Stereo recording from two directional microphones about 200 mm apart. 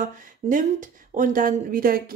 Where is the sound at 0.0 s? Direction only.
40° right (ahead or behind).